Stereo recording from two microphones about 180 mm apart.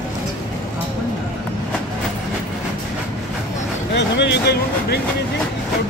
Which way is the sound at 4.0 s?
75° left (ahead or behind).